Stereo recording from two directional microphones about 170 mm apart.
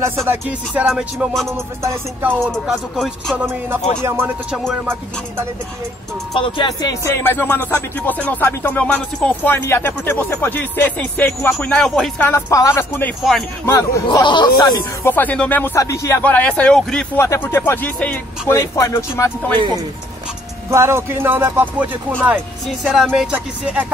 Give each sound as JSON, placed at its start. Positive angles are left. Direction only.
{"t": 0.3, "sound": "music", "side_deg": -10}
{"t": 2.4, "sound": "speech", "side_deg": 0}
{"t": 3.4, "sound": "music", "side_deg": -10}
{"t": 6.4, "sound": "speech", "side_deg": 30}
{"t": 12.3, "sound": "speech", "side_deg": 15}
{"t": 15.0, "sound": "speech", "side_deg": 10}
{"t": 20.7, "sound": "music", "side_deg": -15}
{"t": 22.8, "sound": "speech", "side_deg": 0}